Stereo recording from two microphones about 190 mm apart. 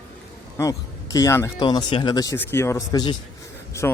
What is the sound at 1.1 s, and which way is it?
Speech, 15° left (ahead or behind).